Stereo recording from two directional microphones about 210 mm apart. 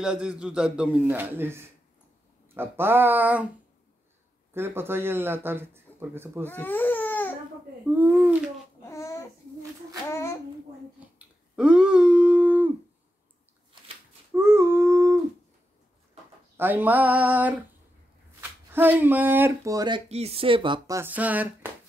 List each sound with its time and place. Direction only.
0.0 s a man's voice: 5° right (ahead or behind)
4.6 s speech: 10° right (ahead or behind)
6.4 s baby cry: 10° left (ahead or behind)
7.9 s a sound: 5° right (ahead or behind)
8.8 s a sound: 15° left (ahead or behind)
11.1 s a sound: 5° right (ahead or behind)
14.3 s dog: 10° right (ahead or behind)
16.5 s speech: 10° right (ahead or behind)
18.7 s speech: 10° right (ahead or behind)
20.1 s speech: 30° right (ahead or behind); by 21.5 s 5° right (ahead or behind)